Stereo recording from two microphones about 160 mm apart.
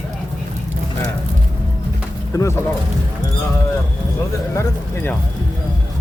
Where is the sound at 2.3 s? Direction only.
15° left (ahead or behind).